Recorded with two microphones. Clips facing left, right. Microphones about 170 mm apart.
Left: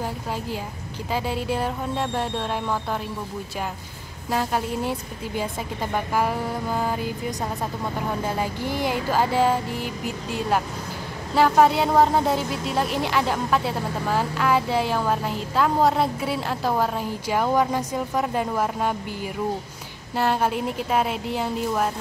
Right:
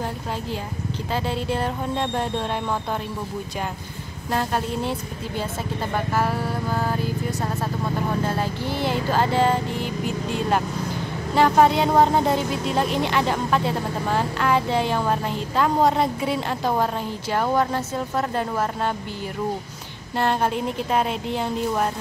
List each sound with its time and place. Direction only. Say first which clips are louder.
1.1 s speech: even; 10° left (ahead or behind)
4.3 s speech: even; 5° left (ahead or behind)
20.2 s speech: even; 5° left (ahead or behind)